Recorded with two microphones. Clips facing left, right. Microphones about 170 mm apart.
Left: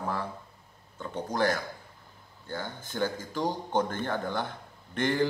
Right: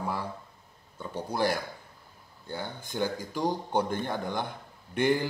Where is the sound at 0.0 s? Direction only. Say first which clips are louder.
Even; 10° right (ahead or behind).